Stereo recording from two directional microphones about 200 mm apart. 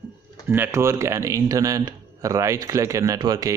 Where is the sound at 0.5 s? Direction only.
10° right (ahead or behind).